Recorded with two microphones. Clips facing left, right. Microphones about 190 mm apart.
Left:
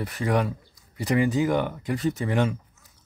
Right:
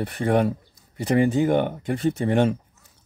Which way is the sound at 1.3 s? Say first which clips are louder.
Right 3 dB; 55° right (ahead or behind).